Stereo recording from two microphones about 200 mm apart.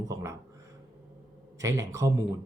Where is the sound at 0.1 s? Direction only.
15° right (ahead or behind).